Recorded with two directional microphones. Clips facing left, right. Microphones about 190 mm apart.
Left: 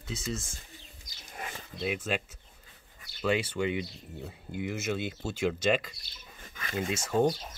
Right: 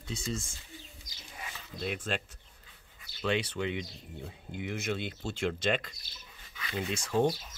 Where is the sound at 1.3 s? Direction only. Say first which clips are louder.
Left 5 dB; 50° left (ahead or behind).